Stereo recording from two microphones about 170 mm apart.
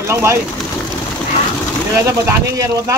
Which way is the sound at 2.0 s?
15° right (ahead or behind).